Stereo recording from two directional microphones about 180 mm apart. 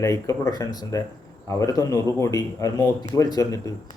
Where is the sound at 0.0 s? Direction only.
15° left (ahead or behind).